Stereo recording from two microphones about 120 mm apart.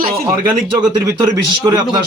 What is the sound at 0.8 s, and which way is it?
Speech, 30° right (ahead or behind).